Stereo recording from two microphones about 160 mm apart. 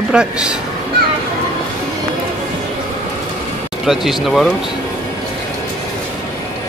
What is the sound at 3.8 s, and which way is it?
Speech, centre (ahead or behind).